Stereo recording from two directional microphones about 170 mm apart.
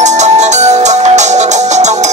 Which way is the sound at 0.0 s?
45° right (ahead or behind).